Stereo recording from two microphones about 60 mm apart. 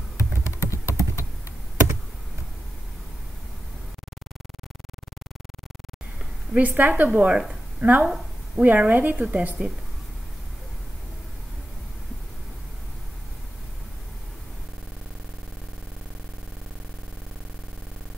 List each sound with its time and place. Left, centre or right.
0.6 s computer keyboard: left
6.5 s speech: right